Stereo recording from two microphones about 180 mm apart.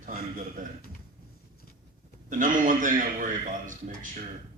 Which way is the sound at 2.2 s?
45° right (ahead or behind).